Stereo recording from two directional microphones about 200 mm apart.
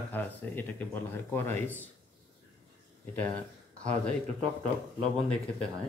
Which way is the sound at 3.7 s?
5° left (ahead or behind).